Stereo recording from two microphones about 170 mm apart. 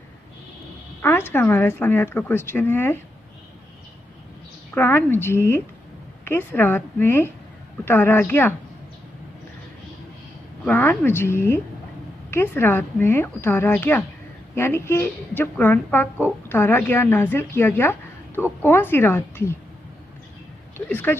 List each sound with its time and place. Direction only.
1.0 s a woman's voice: 10° left (ahead or behind)
4.7 s a woman's voice: 10° left (ahead or behind)
10.6 s a woman's voice: 10° left (ahead or behind)
20.9 s a woman's voice: 10° left (ahead or behind)